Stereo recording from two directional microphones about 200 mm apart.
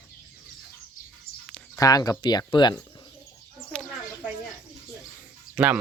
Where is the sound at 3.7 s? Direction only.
5° left (ahead or behind).